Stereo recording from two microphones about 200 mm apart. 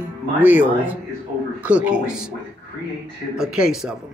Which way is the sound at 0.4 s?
10° right (ahead or behind).